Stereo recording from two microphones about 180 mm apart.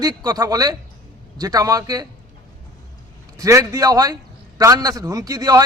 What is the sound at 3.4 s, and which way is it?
A man's voice, 20° right (ahead or behind).